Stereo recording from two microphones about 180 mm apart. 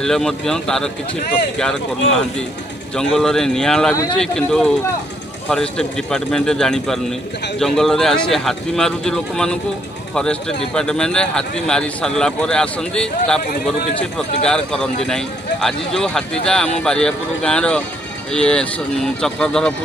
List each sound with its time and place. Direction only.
0.0 s a man's voice: centre (ahead or behind)
3.0 s a man's voice: 5° left (ahead or behind)
10.7 s a man's voice: 5° left (ahead or behind)
14.4 s a man's voice: 5° left (ahead or behind)